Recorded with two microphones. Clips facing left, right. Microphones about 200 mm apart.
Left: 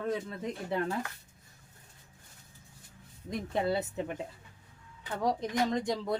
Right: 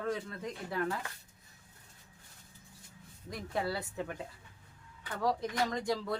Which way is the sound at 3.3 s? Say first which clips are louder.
Left 5 dB; 20° left (ahead or behind).